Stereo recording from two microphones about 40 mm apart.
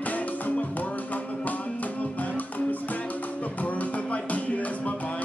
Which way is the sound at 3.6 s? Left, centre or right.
Left.